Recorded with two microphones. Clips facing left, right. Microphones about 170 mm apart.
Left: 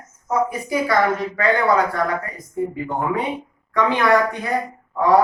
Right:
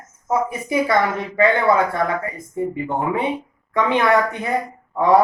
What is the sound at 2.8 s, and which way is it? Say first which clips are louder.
Speech: right 2 dB; 25° right (ahead or behind).